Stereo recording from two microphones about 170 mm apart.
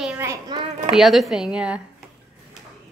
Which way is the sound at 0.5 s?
25° right (ahead or behind).